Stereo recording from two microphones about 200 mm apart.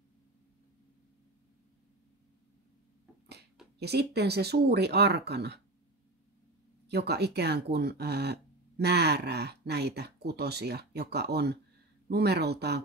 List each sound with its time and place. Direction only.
3.8 s speech: 55° right (ahead or behind)
6.9 s speech: 55° right (ahead or behind)